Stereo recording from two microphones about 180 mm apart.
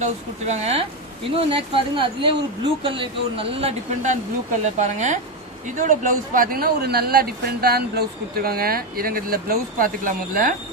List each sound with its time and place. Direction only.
0.0 s a man's voice: 40° right (ahead or behind)